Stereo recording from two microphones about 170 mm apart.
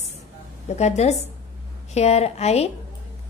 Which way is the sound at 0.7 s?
40° left (ahead or behind).